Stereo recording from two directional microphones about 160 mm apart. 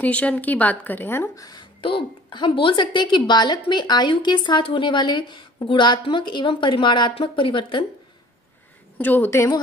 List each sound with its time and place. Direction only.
0.0 s a woman's voice: 10° left (ahead or behind); by 7.8 s 30° left (ahead or behind)
8.9 s a woman's voice: 10° left (ahead or behind)